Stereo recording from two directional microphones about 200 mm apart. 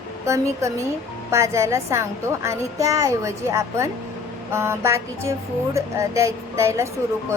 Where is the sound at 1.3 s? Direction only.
15° right (ahead or behind).